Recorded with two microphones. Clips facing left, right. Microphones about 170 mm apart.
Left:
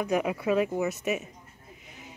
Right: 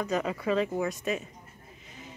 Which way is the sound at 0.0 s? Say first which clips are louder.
Left 2 dB; 10° left (ahead or behind).